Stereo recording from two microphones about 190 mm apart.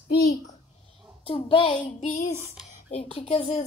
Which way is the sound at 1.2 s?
30° left (ahead or behind).